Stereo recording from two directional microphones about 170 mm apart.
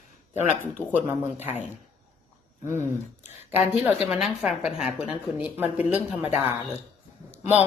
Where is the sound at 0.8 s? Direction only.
15° left (ahead or behind).